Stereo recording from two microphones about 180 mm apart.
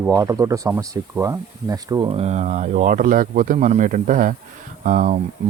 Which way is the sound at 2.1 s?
35° right (ahead or behind).